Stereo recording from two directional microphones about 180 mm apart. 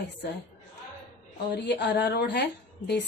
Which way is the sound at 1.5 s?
70° left (ahead or behind).